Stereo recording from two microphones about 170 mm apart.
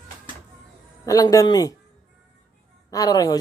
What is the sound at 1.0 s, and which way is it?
Speech, 20° left (ahead or behind).